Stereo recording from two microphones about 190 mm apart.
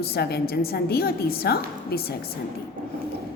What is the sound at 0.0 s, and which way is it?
A woman's voice, 55° left (ahead or behind).